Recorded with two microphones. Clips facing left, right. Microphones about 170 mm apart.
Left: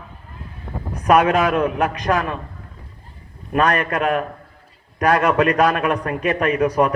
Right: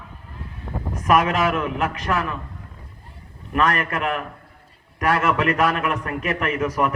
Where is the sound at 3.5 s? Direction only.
30° left (ahead or behind).